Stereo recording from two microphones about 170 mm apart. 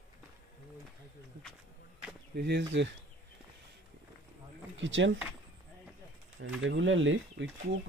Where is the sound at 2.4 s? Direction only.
85° right.